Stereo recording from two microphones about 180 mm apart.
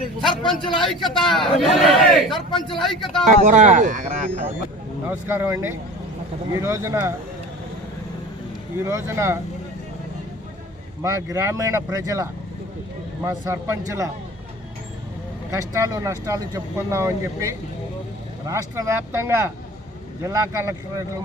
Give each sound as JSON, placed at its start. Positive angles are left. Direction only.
{"t": 0.2, "sound": "a man's voice", "side_deg": 0}
{"t": 2.5, "sound": "speech", "side_deg": 25}
{"t": 2.7, "sound": "a man's voice", "side_deg": 0}
{"t": 3.2, "sound": "speech", "side_deg": -45}
{"t": 5.0, "sound": "speech", "side_deg": -10}
{"t": 8.8, "sound": "speech", "side_deg": -15}
{"t": 11.0, "sound": "speech", "side_deg": -15}
{"t": 15.4, "sound": "speech", "side_deg": -15}